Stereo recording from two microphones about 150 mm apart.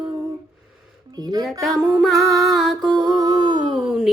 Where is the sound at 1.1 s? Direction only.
25° right (ahead or behind).